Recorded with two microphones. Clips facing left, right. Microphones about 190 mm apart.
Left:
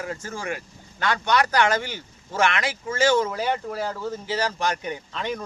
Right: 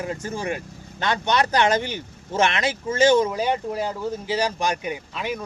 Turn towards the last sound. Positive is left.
turn(degrees=-10)  # may be behind; listen again after turning